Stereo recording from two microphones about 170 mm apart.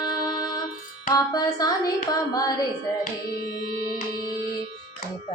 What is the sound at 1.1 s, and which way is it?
Music, 20° left (ahead or behind).